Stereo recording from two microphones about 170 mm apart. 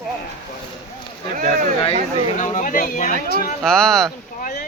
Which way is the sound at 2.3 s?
45° left (ahead or behind).